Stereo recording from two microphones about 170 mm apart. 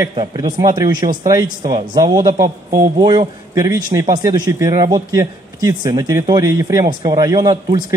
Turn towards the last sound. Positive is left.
turn(degrees=-25)  # may be behind; listen again after turning